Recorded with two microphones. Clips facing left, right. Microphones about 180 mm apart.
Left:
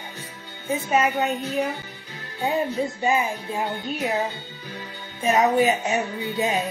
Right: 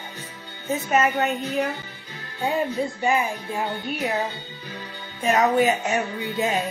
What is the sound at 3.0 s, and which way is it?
Speech, 20° left (ahead or behind).